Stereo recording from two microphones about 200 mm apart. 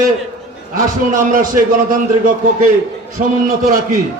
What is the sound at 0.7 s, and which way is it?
A man's voice, 40° right (ahead or behind).